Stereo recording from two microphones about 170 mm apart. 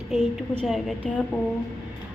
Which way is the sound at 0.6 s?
Centre (ahead or behind).